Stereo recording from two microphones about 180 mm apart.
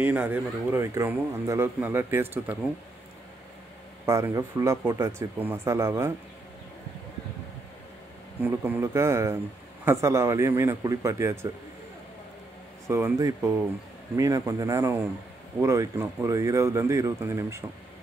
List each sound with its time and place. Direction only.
0.0 s speech: 10° right (ahead or behind)
4.0 s speech: 15° right (ahead or behind)
8.4 s speech: 10° right (ahead or behind)
12.8 s speech: 15° right (ahead or behind)